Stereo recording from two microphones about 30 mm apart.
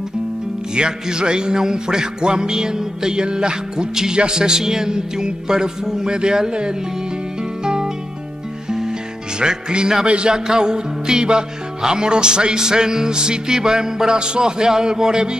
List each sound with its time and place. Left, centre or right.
0.7 s music: right
10.0 s music: right
10.3 s music: right